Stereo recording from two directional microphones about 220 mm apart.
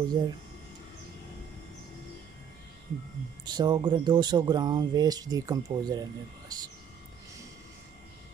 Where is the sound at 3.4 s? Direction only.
20° right (ahead or behind).